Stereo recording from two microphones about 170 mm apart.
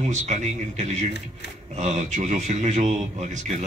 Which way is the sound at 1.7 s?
40° right (ahead or behind).